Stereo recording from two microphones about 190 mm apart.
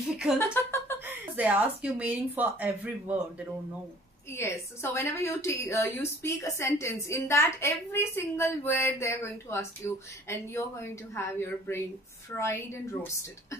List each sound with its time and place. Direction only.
0.4 s speech: 15° left (ahead or behind)
1.0 s speech: 10° right (ahead or behind)
4.3 s a woman's voice: 15° left (ahead or behind)